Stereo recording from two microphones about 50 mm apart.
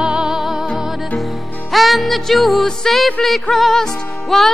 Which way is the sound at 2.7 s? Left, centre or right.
Centre.